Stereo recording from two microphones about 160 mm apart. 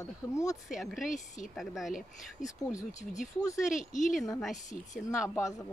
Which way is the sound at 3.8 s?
50° left (ahead or behind).